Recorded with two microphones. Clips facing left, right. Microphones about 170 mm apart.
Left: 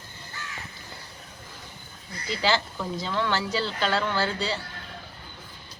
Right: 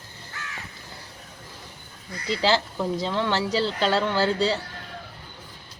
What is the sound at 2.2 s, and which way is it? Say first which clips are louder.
Speech: right 3 dB; 30° right (ahead or behind).